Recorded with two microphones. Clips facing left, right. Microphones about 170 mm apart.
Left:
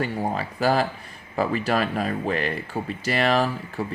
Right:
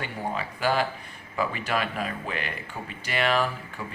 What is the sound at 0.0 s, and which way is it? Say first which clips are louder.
Speech: left 6 dB; 40° left (ahead or behind).